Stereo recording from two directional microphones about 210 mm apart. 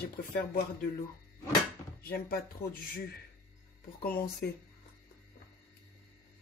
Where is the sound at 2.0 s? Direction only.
45° left (ahead or behind).